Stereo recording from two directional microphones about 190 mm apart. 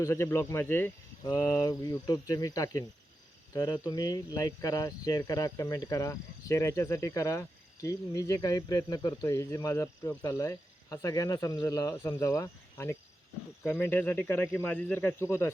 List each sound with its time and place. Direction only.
0.0 s cricket: 15° left (ahead or behind)